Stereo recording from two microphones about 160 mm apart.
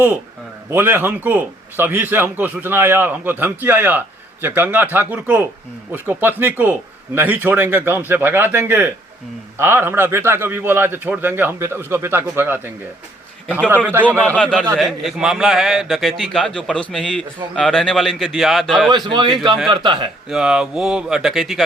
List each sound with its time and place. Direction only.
0.7 s a man's voice: 15° right (ahead or behind)
14.2 s a man's voice: 10° left (ahead or behind)
18.9 s a man's voice: 30° right (ahead or behind)
20.3 s a man's voice: 5° right (ahead or behind)